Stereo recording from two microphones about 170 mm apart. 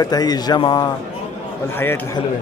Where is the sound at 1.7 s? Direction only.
15° left (ahead or behind).